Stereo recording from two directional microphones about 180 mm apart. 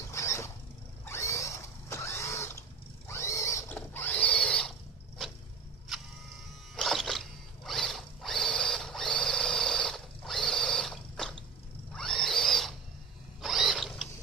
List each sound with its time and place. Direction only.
0.1 s vehicle: 15° left (ahead or behind)
1.0 s mechanisms: 15° left (ahead or behind)
3.1 s a sound: 15° left (ahead or behind)
6.7 s drill: centre (ahead or behind)
11.9 s a sound: 5° left (ahead or behind)
13.4 s mechanisms: centre (ahead or behind)